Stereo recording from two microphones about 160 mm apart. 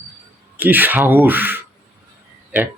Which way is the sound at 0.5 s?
10° right (ahead or behind).